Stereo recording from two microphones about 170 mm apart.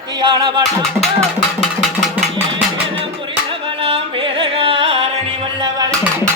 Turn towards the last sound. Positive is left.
turn(degrees=-30)  # may be behind; listen again after turning